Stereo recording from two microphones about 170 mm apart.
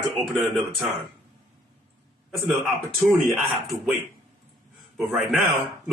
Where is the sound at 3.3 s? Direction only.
Centre (ahead or behind).